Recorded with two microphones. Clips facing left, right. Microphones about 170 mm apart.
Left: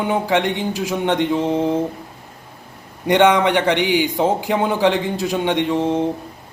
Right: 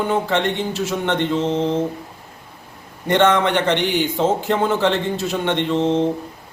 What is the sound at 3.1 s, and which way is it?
Speech, 15° left (ahead or behind).